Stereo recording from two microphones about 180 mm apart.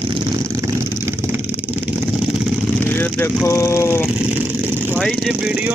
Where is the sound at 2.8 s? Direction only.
10° left (ahead or behind).